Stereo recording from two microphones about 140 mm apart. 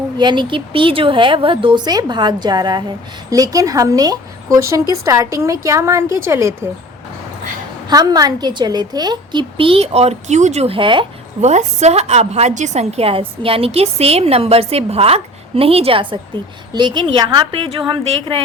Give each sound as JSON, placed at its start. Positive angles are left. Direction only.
{"t": 0.2, "sound": "a woman's voice", "side_deg": -35}
{"t": 7.9, "sound": "a woman's voice", "side_deg": -30}
{"t": 11.3, "sound": "a woman's voice", "side_deg": -55}